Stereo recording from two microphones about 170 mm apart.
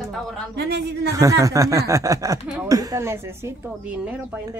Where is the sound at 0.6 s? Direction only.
75° right (ahead or behind).